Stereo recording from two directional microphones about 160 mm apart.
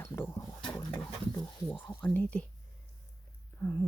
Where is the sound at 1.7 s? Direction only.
10° left (ahead or behind).